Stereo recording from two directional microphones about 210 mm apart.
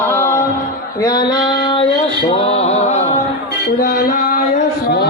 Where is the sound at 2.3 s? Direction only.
30° left (ahead or behind).